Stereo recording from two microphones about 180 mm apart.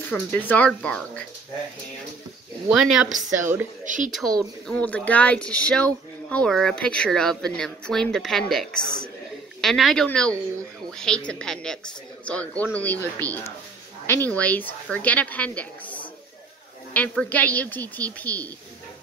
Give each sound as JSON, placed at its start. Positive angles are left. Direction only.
{"t": 0.0, "sound": "a woman's voice", "side_deg": 10}
{"t": 2.7, "sound": "speech", "side_deg": 0}
{"t": 3.3, "sound": "a woman's voice", "side_deg": -15}
{"t": 3.8, "sound": "speech", "side_deg": -45}
{"t": 4.6, "sound": "a woman's voice", "side_deg": 10}